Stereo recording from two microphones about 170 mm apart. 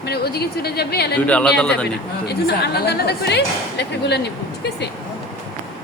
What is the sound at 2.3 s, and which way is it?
A woman's voice, 70° left (ahead or behind).